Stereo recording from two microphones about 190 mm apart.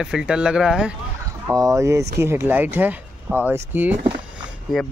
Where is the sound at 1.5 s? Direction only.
15° right (ahead or behind).